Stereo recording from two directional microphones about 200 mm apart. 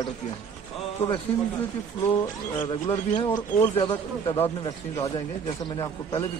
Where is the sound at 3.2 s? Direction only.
15° left (ahead or behind).